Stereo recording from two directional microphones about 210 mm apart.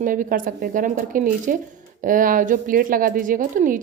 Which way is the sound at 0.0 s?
40° right (ahead or behind).